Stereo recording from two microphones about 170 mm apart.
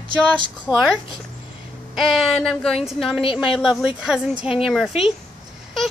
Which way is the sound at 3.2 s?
30° left (ahead or behind).